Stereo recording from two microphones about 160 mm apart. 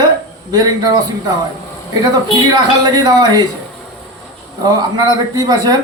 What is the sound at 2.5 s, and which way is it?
Speech, 25° right (ahead or behind).